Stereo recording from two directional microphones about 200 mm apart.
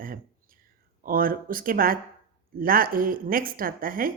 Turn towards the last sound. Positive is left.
turn(degrees=-45)  # may be behind; listen again after turning